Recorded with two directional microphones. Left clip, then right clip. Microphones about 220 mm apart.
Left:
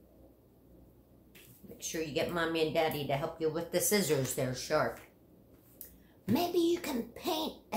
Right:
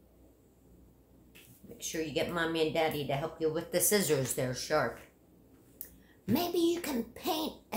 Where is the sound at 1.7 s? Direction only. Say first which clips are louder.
Right 1 dB; 10° right (ahead or behind).